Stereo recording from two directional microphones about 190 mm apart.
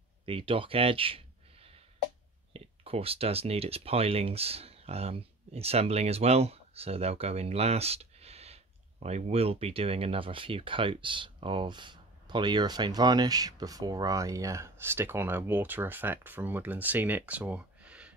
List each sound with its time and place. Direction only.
0.2 s speech: 30° right (ahead or behind)
2.5 s speech: 30° right (ahead or behind); by 18.1 s 5° right (ahead or behind)